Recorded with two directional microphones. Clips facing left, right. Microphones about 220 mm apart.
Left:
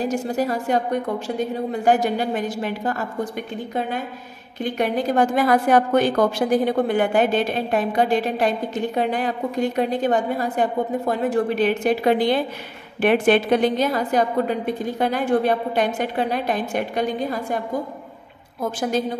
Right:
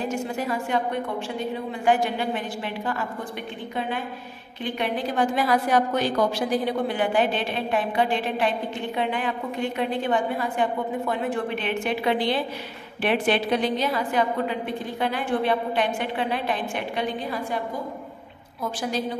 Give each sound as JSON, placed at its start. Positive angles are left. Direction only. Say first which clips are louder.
{"t": 0.0, "sound": "a woman's voice", "louder": "left 5 dB", "side_deg": 35}
{"t": 4.6, "sound": "a woman's voice", "louder": "left 5 dB", "side_deg": 45}
{"t": 18.6, "sound": "a woman's voice", "louder": "left 5 dB", "side_deg": 45}